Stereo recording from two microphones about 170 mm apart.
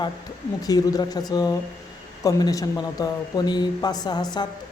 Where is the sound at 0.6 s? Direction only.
20° left (ahead or behind).